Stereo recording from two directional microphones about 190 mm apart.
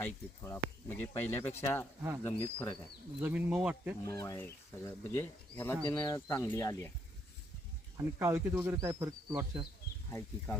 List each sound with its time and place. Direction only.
0.0 s speech: 15° left (ahead or behind)
3.2 s speech: 10° right (ahead or behind)
4.0 s speech: 15° left (ahead or behind)
7.9 s speech: 10° right (ahead or behind)
10.1 s speech: 10° left (ahead or behind)